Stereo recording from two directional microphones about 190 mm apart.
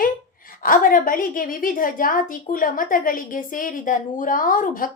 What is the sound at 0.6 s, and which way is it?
A woman's voice, 45° left (ahead or behind).